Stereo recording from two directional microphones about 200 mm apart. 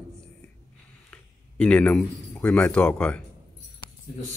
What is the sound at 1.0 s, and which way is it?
Speech, 5° left (ahead or behind).